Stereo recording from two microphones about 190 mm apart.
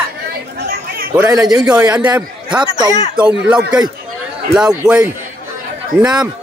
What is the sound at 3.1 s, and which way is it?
Speech, 5° right (ahead or behind).